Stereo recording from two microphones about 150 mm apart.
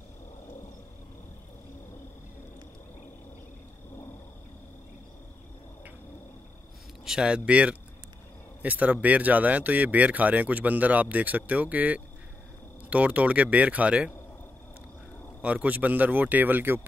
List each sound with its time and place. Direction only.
7.1 s speech: 5° right (ahead or behind)
15.4 s speech: 10° right (ahead or behind)